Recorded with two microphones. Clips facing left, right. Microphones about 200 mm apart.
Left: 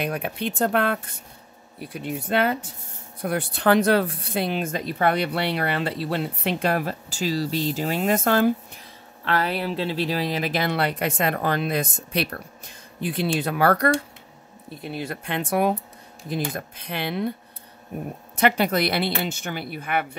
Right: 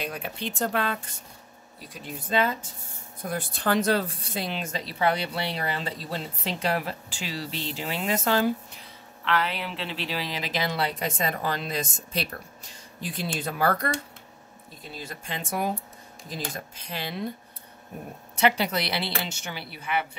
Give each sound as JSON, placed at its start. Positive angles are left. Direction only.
{"t": 0.0, "sound": "speech", "side_deg": 60}
{"t": 18.4, "sound": "a woman's voice", "side_deg": 55}